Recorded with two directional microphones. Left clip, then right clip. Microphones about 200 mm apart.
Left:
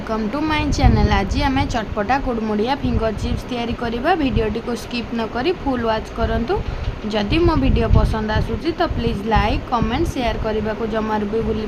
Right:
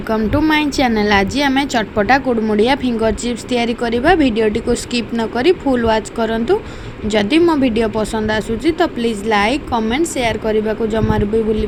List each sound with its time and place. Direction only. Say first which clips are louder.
0.1 s speech: right 6 dB; 15° right (ahead or behind)